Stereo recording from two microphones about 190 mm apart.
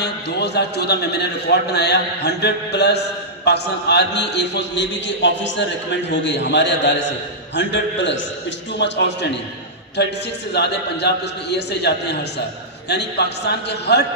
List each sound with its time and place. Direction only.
0.0 s a man's voice: 60° left (ahead or behind)